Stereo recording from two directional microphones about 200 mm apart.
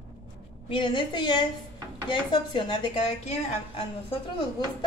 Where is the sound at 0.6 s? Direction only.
25° left (ahead or behind).